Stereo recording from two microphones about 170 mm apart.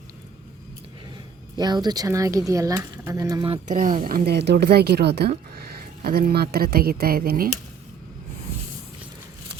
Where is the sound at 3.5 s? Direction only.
45° right (ahead or behind).